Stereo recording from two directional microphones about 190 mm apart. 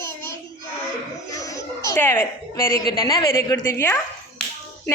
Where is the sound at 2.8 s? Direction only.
25° left (ahead or behind).